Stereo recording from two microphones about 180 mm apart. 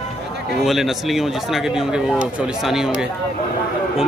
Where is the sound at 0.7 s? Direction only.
Centre (ahead or behind).